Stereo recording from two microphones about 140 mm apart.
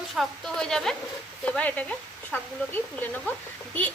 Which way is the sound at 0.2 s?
5° left (ahead or behind).